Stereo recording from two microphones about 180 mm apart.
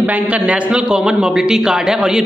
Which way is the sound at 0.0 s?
10° right (ahead or behind).